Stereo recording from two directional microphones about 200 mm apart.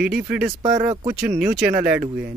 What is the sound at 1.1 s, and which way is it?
Speech, 5° right (ahead or behind).